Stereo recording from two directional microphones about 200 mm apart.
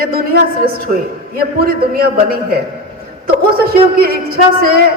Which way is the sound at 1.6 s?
50° right (ahead or behind).